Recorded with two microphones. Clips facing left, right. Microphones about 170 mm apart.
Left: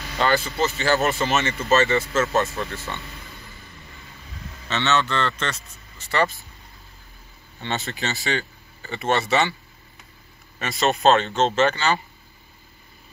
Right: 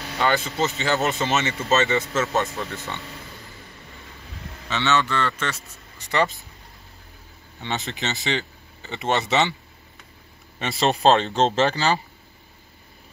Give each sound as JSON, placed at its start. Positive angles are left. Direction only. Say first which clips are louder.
{"t": 0.2, "sound": "speech", "louder": "left 1 dB", "side_deg": -20}
{"t": 4.6, "sound": "speech", "louder": "even", "side_deg": -10}
{"t": 7.6, "sound": "speech", "louder": "left 1 dB", "side_deg": -15}
{"t": 10.8, "sound": "speech", "louder": "even", "side_deg": -30}